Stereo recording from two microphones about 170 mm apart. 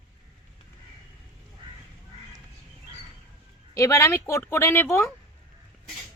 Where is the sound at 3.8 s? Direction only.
15° left (ahead or behind).